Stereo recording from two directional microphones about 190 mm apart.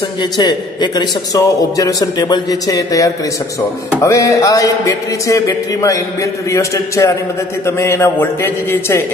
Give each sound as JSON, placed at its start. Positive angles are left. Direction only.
{"t": 0.2, "sound": "a man's voice", "side_deg": 25}